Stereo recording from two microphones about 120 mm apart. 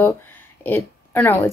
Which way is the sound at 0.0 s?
15° left (ahead or behind).